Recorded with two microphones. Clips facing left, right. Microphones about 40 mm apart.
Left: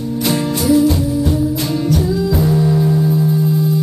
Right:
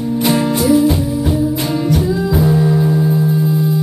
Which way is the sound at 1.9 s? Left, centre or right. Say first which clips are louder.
Even; centre.